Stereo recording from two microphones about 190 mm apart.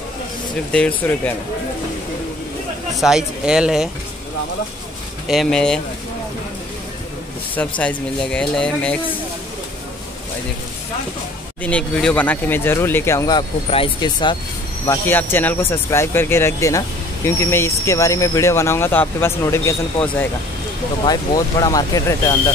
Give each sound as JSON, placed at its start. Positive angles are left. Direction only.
{"t": 0.7, "sound": "speech", "side_deg": 5}
{"t": 3.0, "sound": "speech", "side_deg": -5}
{"t": 5.3, "sound": "speech", "side_deg": 0}
{"t": 7.5, "sound": "speech", "side_deg": 5}
{"t": 11.6, "sound": "speech", "side_deg": 5}
{"t": 14.9, "sound": "speech", "side_deg": 10}